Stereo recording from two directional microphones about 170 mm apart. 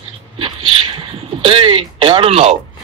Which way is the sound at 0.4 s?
30° right (ahead or behind).